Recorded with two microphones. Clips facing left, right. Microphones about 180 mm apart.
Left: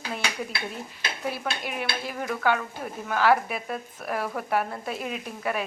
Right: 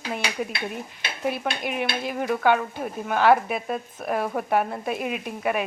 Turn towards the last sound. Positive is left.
turn(degrees=-15)  # may be behind; listen again after turning